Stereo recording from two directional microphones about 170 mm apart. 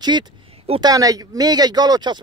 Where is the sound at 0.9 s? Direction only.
20° right (ahead or behind).